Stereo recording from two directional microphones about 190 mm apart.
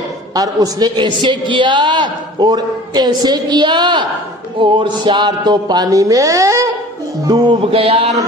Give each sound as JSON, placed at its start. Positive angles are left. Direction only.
{"t": 0.3, "sound": "a man's voice", "side_deg": -20}